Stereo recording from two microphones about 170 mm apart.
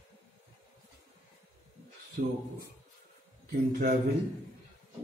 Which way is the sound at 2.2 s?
50° right (ahead or behind).